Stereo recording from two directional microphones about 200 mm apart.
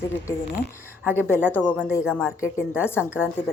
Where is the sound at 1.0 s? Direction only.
10° left (ahead or behind).